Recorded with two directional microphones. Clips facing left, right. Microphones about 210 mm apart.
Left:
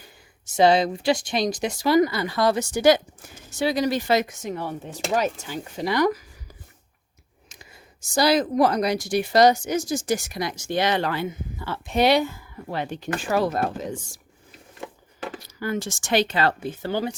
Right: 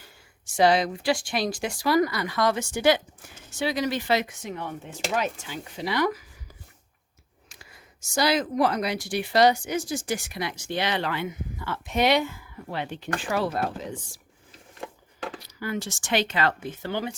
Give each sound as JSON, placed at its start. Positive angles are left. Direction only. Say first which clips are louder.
{"t": 0.4, "sound": "speech", "louder": "left 3 dB", "side_deg": 25}
{"t": 8.1, "sound": "speech", "louder": "left 4 dB", "side_deg": 35}
{"t": 15.4, "sound": "speech", "louder": "left 4 dB", "side_deg": 45}